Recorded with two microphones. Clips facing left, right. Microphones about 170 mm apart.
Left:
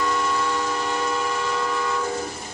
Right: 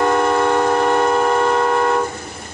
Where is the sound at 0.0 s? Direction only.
60° right (ahead or behind).